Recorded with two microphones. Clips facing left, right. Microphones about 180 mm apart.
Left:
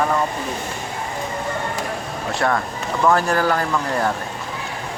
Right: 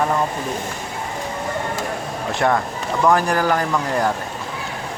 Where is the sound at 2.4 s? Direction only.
20° right (ahead or behind).